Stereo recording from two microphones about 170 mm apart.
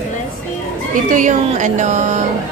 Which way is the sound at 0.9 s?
50° right (ahead or behind).